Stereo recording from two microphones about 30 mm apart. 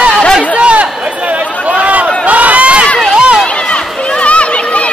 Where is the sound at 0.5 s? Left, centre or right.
Right.